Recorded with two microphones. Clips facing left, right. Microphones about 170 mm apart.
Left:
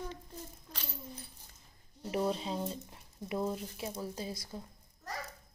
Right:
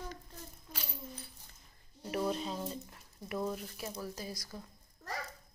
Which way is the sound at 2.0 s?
25° left (ahead or behind).